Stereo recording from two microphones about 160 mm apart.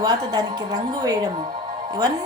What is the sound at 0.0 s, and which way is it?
Speech, 25° right (ahead or behind).